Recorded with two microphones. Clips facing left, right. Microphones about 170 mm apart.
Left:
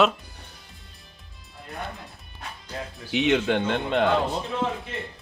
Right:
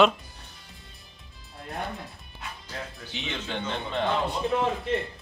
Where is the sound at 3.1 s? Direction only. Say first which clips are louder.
Left 13 dB; 75° left (ahead or behind).